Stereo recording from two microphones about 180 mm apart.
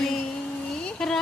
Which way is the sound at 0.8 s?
5° left (ahead or behind).